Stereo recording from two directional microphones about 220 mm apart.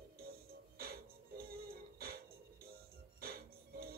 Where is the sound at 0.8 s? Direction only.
45° right (ahead or behind).